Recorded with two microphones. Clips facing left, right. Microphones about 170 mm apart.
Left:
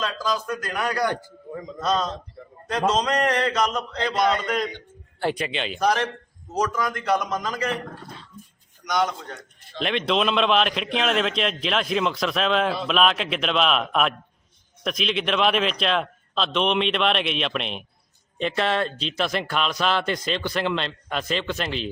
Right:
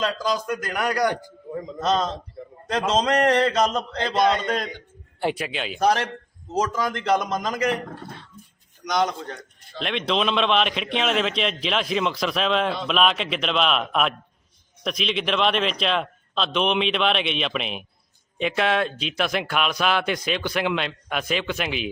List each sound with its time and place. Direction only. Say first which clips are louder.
0.2 s a man's voice: right 1 dB; 15° right (ahead or behind)
2.6 s a man's voice: right 1 dB; 30° right (ahead or behind)
3.2 s mantra: right 3 dB; 35° right (ahead or behind)
5.2 s a man's voice: even; 5° right (ahead or behind)
6.5 s a man's voice: right 1 dB; 25° right (ahead or behind)
9.7 s a man's voice: left 1 dB; centre (ahead or behind)